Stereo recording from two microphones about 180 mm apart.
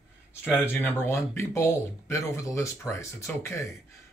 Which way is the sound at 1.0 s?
15° left (ahead or behind).